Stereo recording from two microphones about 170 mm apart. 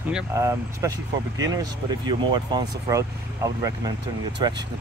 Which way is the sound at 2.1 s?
25° right (ahead or behind).